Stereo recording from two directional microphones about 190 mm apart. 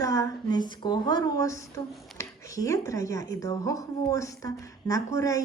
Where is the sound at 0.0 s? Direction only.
20° left (ahead or behind).